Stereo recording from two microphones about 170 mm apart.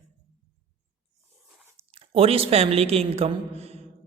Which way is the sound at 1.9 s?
35° right (ahead or behind).